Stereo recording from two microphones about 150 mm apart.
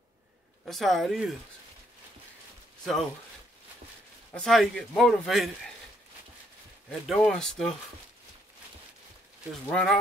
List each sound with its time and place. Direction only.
0.7 s a man's voice: centre (ahead or behind)
2.8 s speech: centre (ahead or behind)
4.3 s a man's voice: 5° left (ahead or behind)
6.9 s a man's voice: 5° left (ahead or behind)
9.5 s a man's voice: 5° left (ahead or behind)